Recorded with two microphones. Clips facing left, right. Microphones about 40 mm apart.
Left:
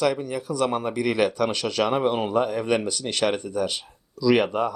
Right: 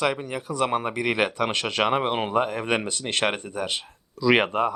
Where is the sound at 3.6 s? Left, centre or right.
Right.